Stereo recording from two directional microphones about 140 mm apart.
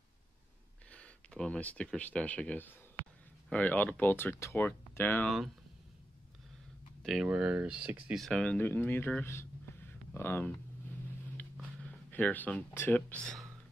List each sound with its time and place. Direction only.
0.9 s speech: 5° left (ahead or behind)
7.0 s a sound: centre (ahead or behind)
7.2 s speech: 10° right (ahead or behind); by 10.5 s 15° left (ahead or behind)
12.1 s speech: 10° left (ahead or behind)